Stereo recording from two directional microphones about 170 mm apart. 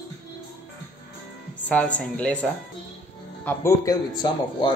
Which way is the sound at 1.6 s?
10° left (ahead or behind).